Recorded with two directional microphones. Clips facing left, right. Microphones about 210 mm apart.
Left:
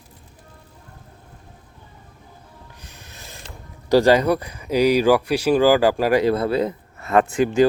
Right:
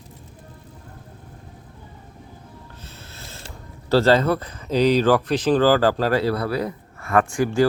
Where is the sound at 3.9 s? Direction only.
15° left (ahead or behind).